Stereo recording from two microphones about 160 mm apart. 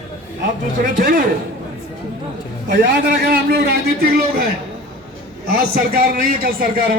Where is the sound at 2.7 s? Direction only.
70° right (ahead or behind).